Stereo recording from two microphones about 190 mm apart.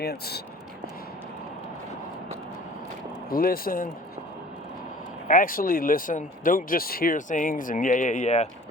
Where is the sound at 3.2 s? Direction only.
50° left (ahead or behind).